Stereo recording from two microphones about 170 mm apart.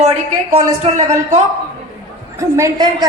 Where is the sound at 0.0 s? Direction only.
40° right (ahead or behind).